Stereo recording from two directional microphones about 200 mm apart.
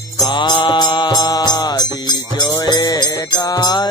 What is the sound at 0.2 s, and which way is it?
Music, 20° left (ahead or behind).